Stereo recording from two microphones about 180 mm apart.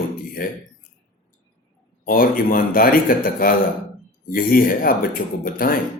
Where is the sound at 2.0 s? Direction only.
55° left (ahead or behind).